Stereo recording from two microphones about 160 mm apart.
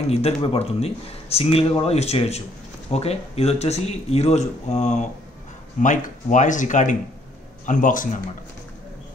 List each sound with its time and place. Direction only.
0.1 s speech: 40° left (ahead or behind); by 8.2 s 55° left (ahead or behind)